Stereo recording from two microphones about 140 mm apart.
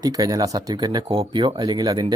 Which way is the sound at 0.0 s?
25° right (ahead or behind).